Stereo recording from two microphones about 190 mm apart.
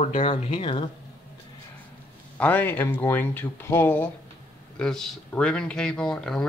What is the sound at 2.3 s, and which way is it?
Speech, 10° left (ahead or behind).